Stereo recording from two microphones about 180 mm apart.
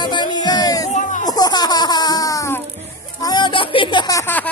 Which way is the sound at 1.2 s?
20° left (ahead or behind).